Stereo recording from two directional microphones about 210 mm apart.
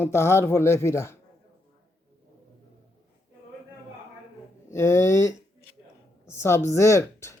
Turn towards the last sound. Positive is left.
turn(degrees=15)  # may be behind; listen again after turning